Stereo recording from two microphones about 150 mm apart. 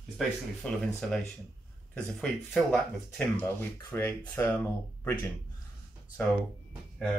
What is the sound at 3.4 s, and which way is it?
Speech, 15° left (ahead or behind).